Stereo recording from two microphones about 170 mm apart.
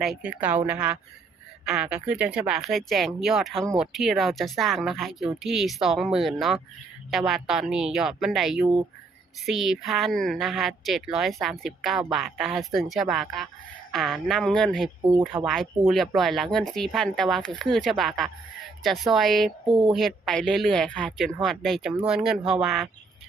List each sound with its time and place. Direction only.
0.0 s a woman's voice: 5° right (ahead or behind)
19.6 s speech: 30° right (ahead or behind)
19.9 s speech: centre (ahead or behind)